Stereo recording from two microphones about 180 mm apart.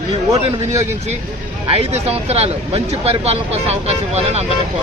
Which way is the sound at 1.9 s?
35° right (ahead or behind).